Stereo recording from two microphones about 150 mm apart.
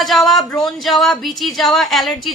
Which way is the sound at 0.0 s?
Centre (ahead or behind).